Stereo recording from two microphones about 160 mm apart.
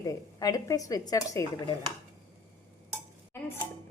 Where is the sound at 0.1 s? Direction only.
25° left (ahead or behind).